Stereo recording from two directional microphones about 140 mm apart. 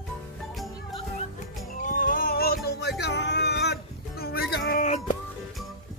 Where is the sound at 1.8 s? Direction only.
75° left (ahead or behind).